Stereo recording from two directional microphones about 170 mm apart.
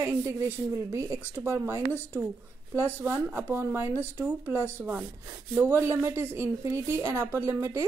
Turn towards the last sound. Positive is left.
turn(degrees=-15)  # may be behind; listen again after turning